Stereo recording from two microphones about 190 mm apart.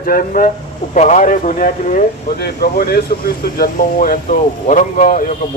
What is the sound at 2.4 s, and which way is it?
A man's voice, 55° left (ahead or behind).